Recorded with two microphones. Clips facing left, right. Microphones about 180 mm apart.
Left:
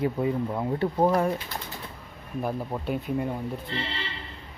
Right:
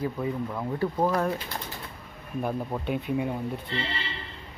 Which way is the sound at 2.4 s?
5° left (ahead or behind).